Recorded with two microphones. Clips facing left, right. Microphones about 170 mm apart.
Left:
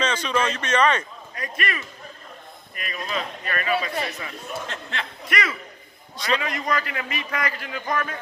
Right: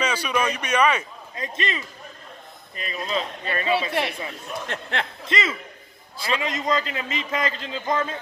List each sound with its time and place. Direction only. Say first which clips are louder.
0.0 s speech: even; 10° right (ahead or behind)
1.3 s a man's voice: right 1 dB; 25° right (ahead or behind)
4.7 s speech: right 4 dB; 60° right (ahead or behind)
5.2 s a man's voice: right 1 dB; 25° right (ahead or behind)